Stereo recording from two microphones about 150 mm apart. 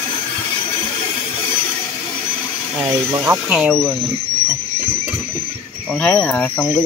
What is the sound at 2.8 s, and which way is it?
Speech, 15° right (ahead or behind).